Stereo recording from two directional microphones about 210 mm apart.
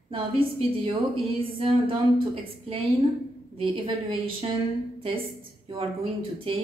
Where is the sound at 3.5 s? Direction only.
25° right (ahead or behind).